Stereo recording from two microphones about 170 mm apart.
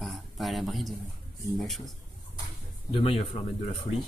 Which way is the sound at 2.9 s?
30° left (ahead or behind).